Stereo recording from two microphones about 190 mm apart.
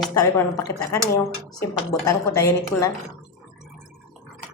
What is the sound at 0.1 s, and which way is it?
A woman's voice, 20° left (ahead or behind).